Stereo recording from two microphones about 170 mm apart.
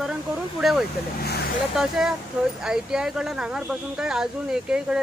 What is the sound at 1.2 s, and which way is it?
Vehicle, 70° left (ahead or behind).